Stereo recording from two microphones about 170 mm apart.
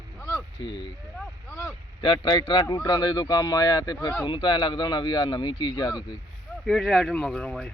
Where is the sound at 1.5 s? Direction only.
15° left (ahead or behind).